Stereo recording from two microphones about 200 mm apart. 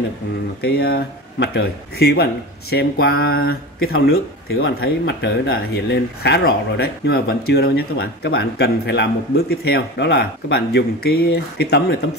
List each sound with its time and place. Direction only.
0.6 s speech: 50° left (ahead or behind)
4.1 s speech: 90° left
4.8 s speech: 65° left (ahead or behind)